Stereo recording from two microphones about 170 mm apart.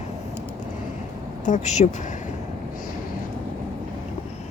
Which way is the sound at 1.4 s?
45° left (ahead or behind).